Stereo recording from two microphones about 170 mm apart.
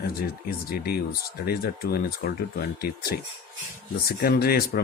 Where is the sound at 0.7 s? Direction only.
60° left (ahead or behind).